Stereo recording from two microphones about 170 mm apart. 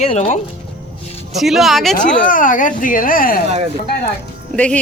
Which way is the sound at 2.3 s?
50° left (ahead or behind).